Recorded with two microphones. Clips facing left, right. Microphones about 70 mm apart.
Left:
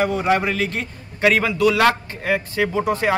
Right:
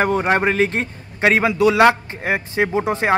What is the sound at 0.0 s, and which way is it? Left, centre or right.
A man's voice, right.